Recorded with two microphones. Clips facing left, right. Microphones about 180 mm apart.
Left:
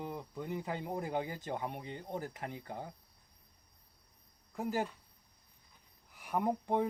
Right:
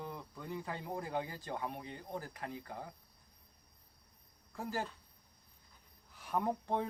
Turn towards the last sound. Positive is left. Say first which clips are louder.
# left 3 dB
turn(degrees=15)  # may be behind; listen again after turning